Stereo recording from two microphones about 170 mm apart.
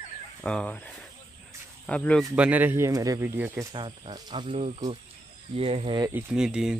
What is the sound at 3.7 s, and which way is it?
Speech, 25° right (ahead or behind).